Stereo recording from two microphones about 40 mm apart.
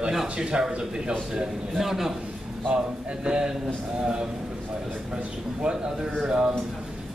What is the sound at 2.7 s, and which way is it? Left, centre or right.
A man's voice, right.